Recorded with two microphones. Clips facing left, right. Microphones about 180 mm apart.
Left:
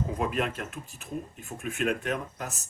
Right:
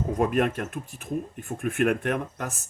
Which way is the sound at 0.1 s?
50° right (ahead or behind).